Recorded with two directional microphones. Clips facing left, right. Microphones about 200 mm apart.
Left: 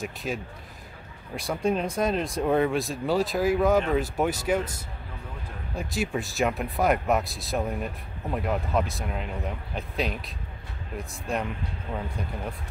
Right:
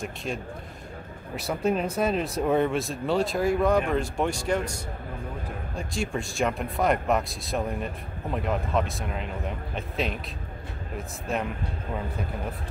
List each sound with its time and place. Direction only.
0.0 s speech: centre (ahead or behind)
5.8 s speech: 5° left (ahead or behind)